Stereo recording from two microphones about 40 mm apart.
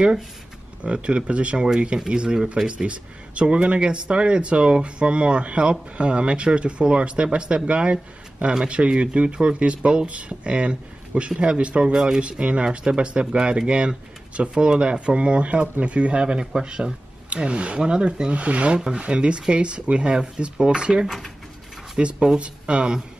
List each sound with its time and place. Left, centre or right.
0.8 s speech: right
18.8 s speech: centre
19.0 s speech: right